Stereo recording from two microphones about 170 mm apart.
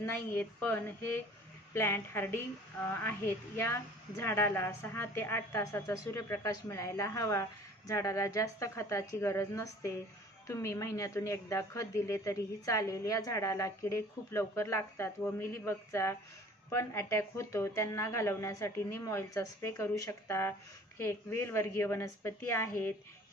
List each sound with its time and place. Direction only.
0.0 s a woman's voice: 10° left (ahead or behind)